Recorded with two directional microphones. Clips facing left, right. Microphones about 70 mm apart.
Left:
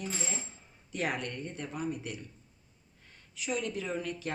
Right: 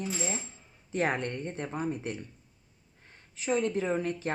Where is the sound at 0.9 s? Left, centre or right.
Right.